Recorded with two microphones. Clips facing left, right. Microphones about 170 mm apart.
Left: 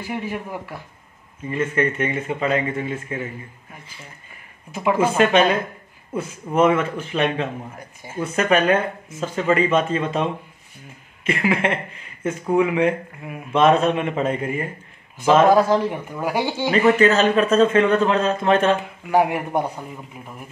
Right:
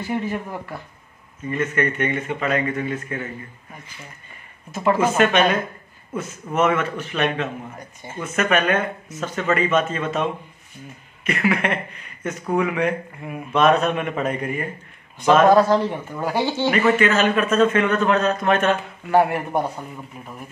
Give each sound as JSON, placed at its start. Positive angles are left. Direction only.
{"t": 0.0, "sound": "speech", "side_deg": 10}
{"t": 1.6, "sound": "speech", "side_deg": 30}
{"t": 4.6, "sound": "speech", "side_deg": 10}
{"t": 5.1, "sound": "a man's voice", "side_deg": 30}
{"t": 7.7, "sound": "speech", "side_deg": 10}
{"t": 8.2, "sound": "a man's voice", "side_deg": 30}
{"t": 13.2, "sound": "mantra", "side_deg": 0}
{"t": 13.5, "sound": "speech", "side_deg": 25}
{"t": 15.4, "sound": "speech", "side_deg": 10}
{"t": 17.0, "sound": "a man's voice", "side_deg": 35}
{"t": 19.0, "sound": "speech", "side_deg": 10}